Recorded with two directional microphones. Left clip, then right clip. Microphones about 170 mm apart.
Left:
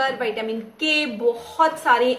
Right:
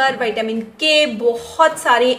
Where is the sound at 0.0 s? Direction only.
5° left (ahead or behind).